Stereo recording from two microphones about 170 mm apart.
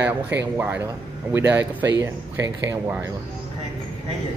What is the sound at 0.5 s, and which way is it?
Speech, 10° right (ahead or behind).